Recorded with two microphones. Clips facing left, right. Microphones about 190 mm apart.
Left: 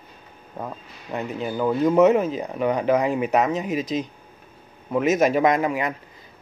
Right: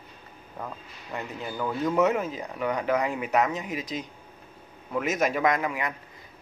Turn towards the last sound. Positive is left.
turn(degrees=25)  # may be behind; listen again after turning